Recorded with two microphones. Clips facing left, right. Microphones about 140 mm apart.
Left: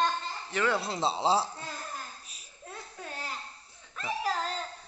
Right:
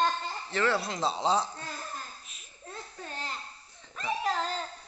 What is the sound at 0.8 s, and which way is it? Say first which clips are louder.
Speech: left 1 dB; 30° left (ahead or behind).